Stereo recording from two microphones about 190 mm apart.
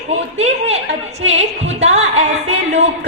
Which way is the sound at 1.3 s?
35° right (ahead or behind).